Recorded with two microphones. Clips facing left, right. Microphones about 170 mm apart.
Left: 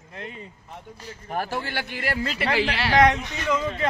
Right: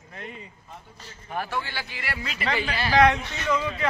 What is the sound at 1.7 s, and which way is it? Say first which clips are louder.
Speech: left 5 dB; 60° left (ahead or behind).